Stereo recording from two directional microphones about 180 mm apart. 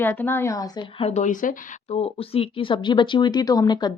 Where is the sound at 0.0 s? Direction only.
10° left (ahead or behind).